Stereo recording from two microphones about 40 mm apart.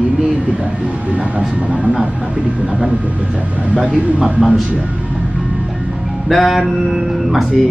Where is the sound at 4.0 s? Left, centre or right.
Centre.